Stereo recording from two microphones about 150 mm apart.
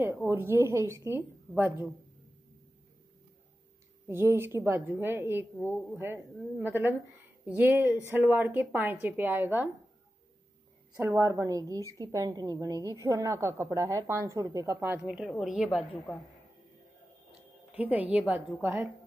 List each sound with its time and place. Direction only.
0.3 s a woman's voice: 15° right (ahead or behind)
4.1 s a woman's voice: 15° right (ahead or behind)
11.0 s a woman's voice: 20° right (ahead or behind); by 15.8 s centre (ahead or behind)
17.7 s a woman's voice: 10° right (ahead or behind)